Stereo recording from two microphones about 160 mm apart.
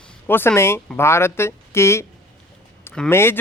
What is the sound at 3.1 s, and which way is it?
Speech, 15° left (ahead or behind).